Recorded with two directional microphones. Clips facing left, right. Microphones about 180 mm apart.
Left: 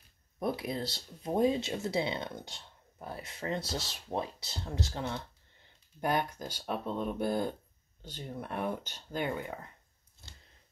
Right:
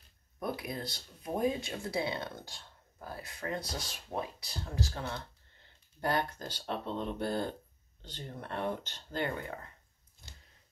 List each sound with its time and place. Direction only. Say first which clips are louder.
0.4 s speech: left 4 dB; 25° left (ahead or behind)